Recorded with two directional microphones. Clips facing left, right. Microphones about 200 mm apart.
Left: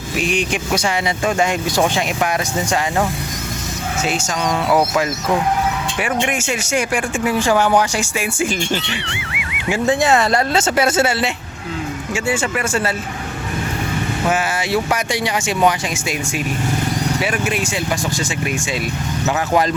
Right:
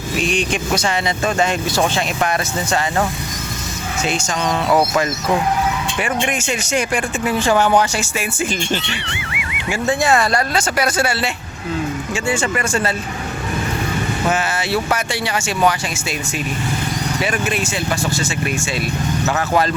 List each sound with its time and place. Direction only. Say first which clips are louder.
0.2 s speech: even; 10° left (ahead or behind)
6.0 s speech: left 2 dB; 10° left (ahead or behind)
9.0 s speech: even; centre (ahead or behind)
9.6 s speech: left 2 dB; 15° left (ahead or behind)
12.1 s speech: left 1 dB; 5° left (ahead or behind)
14.3 s speech: left 1 dB; 10° left (ahead or behind)
17.2 s speech: even; 10° left (ahead or behind)